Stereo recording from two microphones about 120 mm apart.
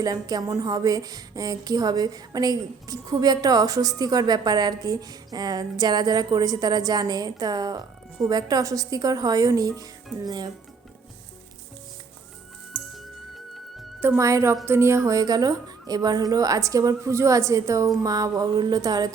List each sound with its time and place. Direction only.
0.0 s a woman's voice: 30° right (ahead or behind)
14.0 s a woman's voice: 20° right (ahead or behind)